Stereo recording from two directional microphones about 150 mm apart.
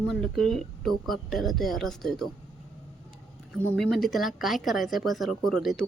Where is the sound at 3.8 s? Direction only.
Centre (ahead or behind).